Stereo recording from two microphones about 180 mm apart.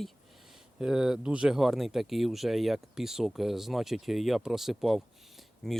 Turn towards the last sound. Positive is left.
turn(degrees=5)  # may be behind; listen again after turning